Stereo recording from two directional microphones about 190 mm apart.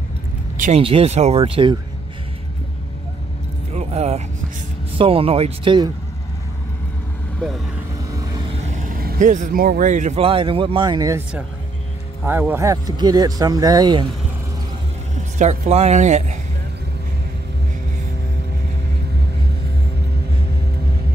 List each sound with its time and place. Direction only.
0.6 s speech: 35° right (ahead or behind)
3.7 s music: 35° right (ahead or behind)
4.9 s speech: 30° right (ahead or behind)
8.1 s vehicle: 20° right (ahead or behind)
8.5 s speech: 40° right (ahead or behind); by 11.2 s 20° right (ahead or behind)
12.3 s speech: 10° right (ahead or behind)
15.3 s speech: 40° right (ahead or behind)